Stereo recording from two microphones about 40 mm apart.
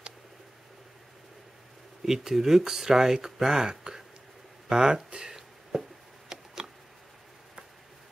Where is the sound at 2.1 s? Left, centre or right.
Centre.